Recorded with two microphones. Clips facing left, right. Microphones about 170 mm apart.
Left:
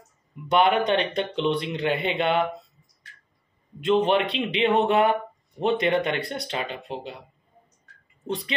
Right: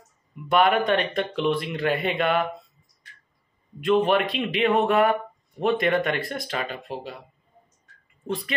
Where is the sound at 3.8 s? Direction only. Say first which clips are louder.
Even; 25° left (ahead or behind).